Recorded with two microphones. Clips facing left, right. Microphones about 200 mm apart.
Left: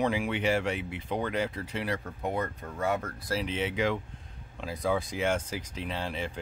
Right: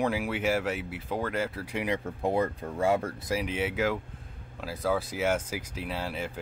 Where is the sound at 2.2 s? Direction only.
30° right (ahead or behind).